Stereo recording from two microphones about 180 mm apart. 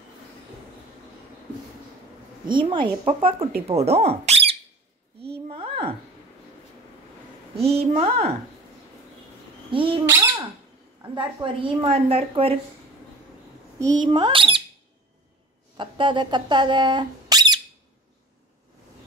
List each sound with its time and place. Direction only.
2.4 s a woman's voice: 25° right (ahead or behind)
5.2 s a sound: 35° right (ahead or behind)
7.6 s a woman's voice: 35° right (ahead or behind)
9.7 s a sound: 30° right (ahead or behind)
11.0 s a woman's voice: 25° right (ahead or behind)
13.7 s a woman's voice: 20° right (ahead or behind)
15.8 s speech: 25° right (ahead or behind)